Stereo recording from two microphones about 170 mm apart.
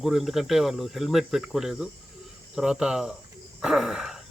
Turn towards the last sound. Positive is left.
turn(degrees=-5)  # may be behind; listen again after turning